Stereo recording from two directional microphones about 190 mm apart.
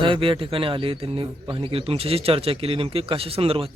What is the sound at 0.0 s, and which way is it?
A man's voice, 25° right (ahead or behind).